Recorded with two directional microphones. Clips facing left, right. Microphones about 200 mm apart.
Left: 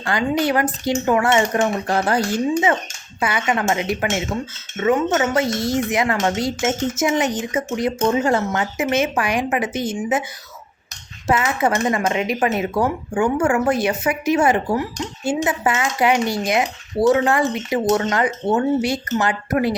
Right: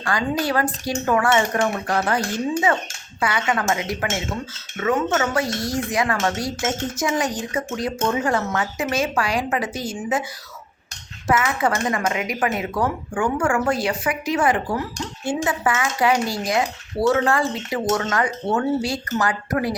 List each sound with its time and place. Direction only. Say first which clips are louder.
0.0 s speech: left 3 dB; 25° left (ahead or behind)
11.3 s speech: left 2 dB; 25° left (ahead or behind)